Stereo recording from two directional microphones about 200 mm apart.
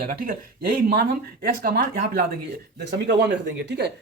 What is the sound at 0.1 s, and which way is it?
Speech, 45° right (ahead or behind).